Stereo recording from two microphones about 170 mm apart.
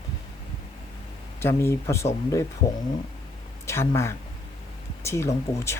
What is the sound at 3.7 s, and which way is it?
Speech, 15° left (ahead or behind).